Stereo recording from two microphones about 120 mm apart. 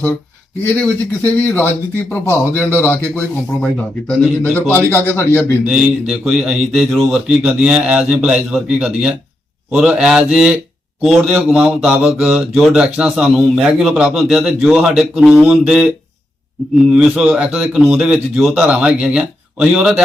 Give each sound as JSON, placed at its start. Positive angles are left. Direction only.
{"t": 0.6, "sound": "speech", "side_deg": 15}
{"t": 4.5, "sound": "a man's voice", "side_deg": 20}
{"t": 5.6, "sound": "a man's voice", "side_deg": -5}
{"t": 16.9, "sound": "a man's voice", "side_deg": -5}
{"t": 18.6, "sound": "speech", "side_deg": -10}